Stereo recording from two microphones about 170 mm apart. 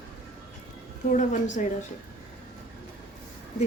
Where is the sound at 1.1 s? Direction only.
45° left (ahead or behind).